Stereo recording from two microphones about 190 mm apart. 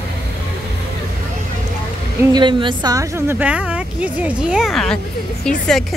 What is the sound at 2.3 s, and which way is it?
A woman's voice, 25° right (ahead or behind).